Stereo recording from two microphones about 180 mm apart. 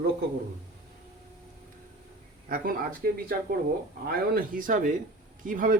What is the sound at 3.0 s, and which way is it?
Speech, 55° right (ahead or behind).